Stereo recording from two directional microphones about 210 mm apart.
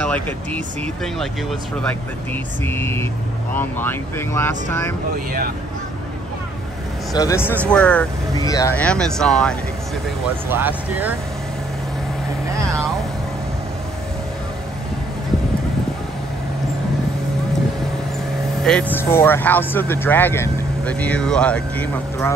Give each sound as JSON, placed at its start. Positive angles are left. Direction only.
{"t": 0.0, "sound": "speech", "side_deg": 5}
{"t": 7.1, "sound": "speech", "side_deg": 15}
{"t": 8.4, "sound": "speech", "side_deg": 15}
{"t": 10.5, "sound": "speech", "side_deg": -10}
{"t": 18.6, "sound": "speech", "side_deg": 5}